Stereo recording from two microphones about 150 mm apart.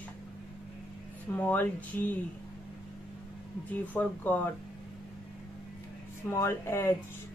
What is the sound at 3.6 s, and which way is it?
Speech, 10° left (ahead or behind).